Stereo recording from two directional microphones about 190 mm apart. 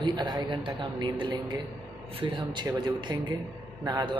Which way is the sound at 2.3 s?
25° right (ahead or behind).